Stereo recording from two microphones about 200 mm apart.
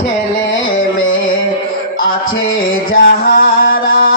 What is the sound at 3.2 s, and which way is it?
Mantra, 45° left (ahead or behind).